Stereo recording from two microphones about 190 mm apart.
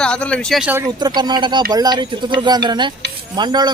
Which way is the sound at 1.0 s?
20° right (ahead or behind).